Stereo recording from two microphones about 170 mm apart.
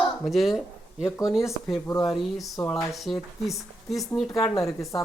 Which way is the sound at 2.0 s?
Centre (ahead or behind).